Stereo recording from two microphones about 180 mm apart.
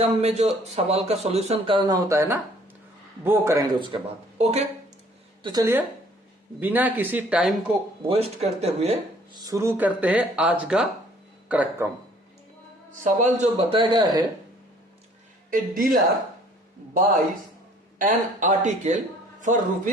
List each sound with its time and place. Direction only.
0.2 s a man's voice: 35° right (ahead or behind); by 3.6 s 15° right (ahead or behind)
3.8 s speech: 30° right (ahead or behind)
5.4 s speech: 20° right (ahead or behind); by 7.8 s 5° right (ahead or behind)
8.0 s a man's voice: 35° right (ahead or behind)
9.3 s speech: 15° right (ahead or behind)
12.9 s a man's voice: 45° right (ahead or behind); by 14.3 s 25° right (ahead or behind)
15.4 s speech: 50° right (ahead or behind)
18.0 s speech: 45° right (ahead or behind)